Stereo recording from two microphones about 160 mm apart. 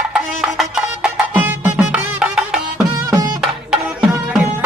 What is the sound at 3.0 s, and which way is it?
Music, 20° right (ahead or behind).